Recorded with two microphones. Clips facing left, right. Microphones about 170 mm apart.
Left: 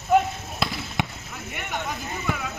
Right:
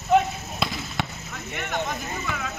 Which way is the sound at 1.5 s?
10° left (ahead or behind).